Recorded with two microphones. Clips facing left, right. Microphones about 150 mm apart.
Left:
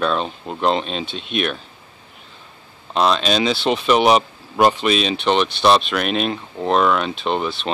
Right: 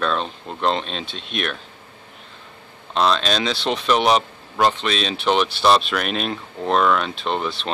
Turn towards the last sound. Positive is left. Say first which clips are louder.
# left 2 dB
turn(degrees=0)  # may be behind; listen again after turning